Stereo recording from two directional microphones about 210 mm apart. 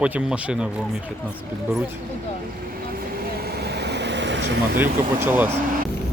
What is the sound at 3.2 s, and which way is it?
Vehicle, 50° right (ahead or behind).